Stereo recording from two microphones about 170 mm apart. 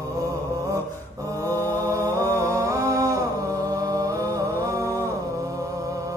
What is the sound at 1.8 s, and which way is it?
Music, 20° right (ahead or behind).